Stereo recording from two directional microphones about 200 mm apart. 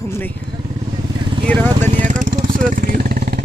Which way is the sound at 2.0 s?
40° right (ahead or behind).